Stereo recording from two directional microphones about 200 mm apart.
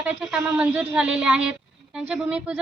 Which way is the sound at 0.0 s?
5° right (ahead or behind).